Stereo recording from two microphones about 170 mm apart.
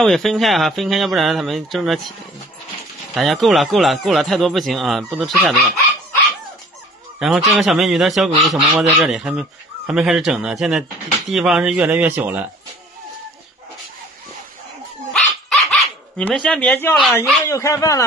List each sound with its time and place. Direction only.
0.0 s speech: centre (ahead or behind)
3.2 s speech: centre (ahead or behind)
7.2 s speech: centre (ahead or behind)
15.1 s dog: centre (ahead or behind)
17.5 s speech: 20° left (ahead or behind)